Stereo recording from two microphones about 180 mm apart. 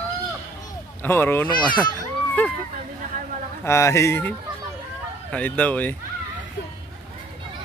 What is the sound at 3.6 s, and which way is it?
Speech, 15° left (ahead or behind).